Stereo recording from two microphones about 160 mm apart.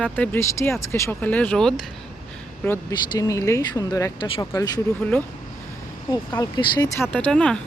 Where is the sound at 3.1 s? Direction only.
20° left (ahead or behind).